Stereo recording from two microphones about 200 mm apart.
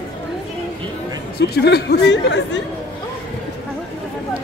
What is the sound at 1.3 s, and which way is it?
Speech, 55° left (ahead or behind).